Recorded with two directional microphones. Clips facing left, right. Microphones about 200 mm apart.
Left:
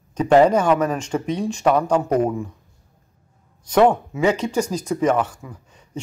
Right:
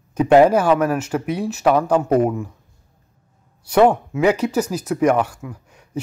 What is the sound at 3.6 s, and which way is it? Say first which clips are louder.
Speech: right 1 dB; 10° right (ahead or behind).